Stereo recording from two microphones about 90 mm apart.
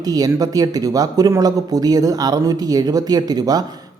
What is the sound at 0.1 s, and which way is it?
A man's voice, 45° right (ahead or behind).